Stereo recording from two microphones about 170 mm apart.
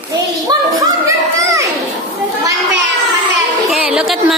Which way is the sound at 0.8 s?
20° right (ahead or behind).